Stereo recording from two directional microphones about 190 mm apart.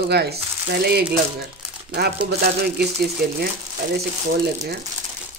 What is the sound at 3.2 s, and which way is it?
Speech, 50° right (ahead or behind).